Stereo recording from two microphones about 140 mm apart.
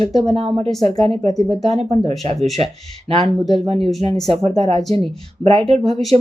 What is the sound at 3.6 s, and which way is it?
Speech, 45° right (ahead or behind).